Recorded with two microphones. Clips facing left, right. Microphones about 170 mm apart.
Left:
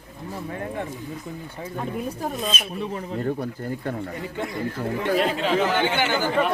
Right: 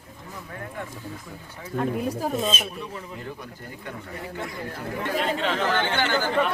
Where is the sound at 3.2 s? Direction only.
45° left (ahead or behind).